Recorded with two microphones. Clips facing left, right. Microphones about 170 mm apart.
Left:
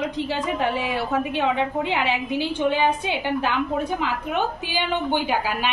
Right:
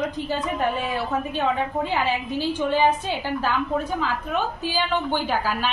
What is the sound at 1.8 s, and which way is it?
A woman's voice, 15° left (ahead or behind).